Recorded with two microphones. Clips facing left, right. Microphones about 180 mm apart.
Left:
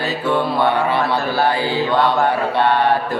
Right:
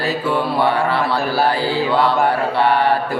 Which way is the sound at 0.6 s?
20° left (ahead or behind).